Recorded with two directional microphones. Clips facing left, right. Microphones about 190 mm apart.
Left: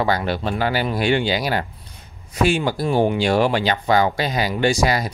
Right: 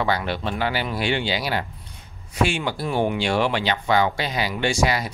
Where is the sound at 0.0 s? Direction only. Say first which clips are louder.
Left 3 dB; 40° left (ahead or behind).